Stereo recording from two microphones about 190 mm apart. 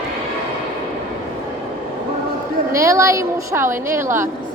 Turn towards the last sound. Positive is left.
turn(degrees=-15)  # may be behind; listen again after turning